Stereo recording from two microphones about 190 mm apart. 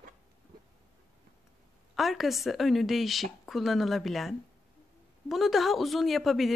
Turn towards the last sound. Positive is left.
turn(degrees=0)  # may be behind; listen again after turning